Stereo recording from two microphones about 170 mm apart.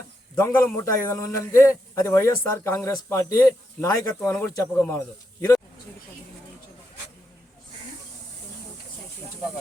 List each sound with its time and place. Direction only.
0.3 s a man's voice: 15° left (ahead or behind)